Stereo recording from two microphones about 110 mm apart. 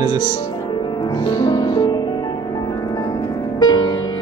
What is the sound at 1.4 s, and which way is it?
Music, 45° left (ahead or behind).